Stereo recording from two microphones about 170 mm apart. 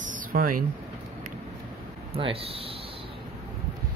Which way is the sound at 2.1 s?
35° right (ahead or behind).